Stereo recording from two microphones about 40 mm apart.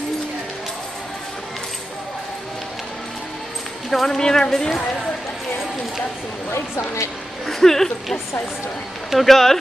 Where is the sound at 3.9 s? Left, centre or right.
Centre.